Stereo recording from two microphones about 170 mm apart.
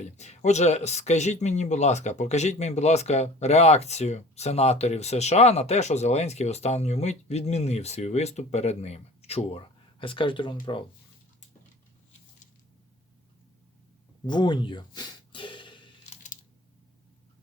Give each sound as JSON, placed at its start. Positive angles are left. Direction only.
{"t": 0.0, "sound": "speech", "side_deg": 40}
{"t": 14.3, "sound": "speech", "side_deg": 25}
{"t": 16.0, "sound": "a sound", "side_deg": 45}